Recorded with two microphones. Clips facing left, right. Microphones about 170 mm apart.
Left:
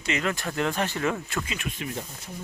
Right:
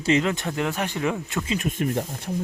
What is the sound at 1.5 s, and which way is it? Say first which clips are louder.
Speech: right 8 dB; 40° right (ahead or behind).